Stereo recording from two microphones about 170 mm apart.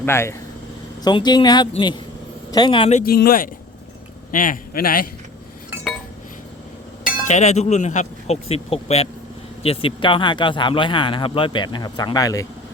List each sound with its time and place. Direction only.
0.0 s speech: 15° left (ahead or behind); by 3.0 s 30° left (ahead or behind)
3.0 s a man's voice: 65° left (ahead or behind)
7.3 s a man's voice: 45° left (ahead or behind); by 12.5 s 20° left (ahead or behind)